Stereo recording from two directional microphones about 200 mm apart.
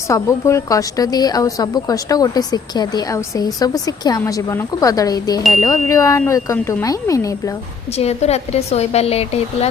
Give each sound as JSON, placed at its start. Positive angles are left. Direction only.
{"t": 0.1, "sound": "a woman's voice", "side_deg": 15}
{"t": 7.9, "sound": "speech", "side_deg": 30}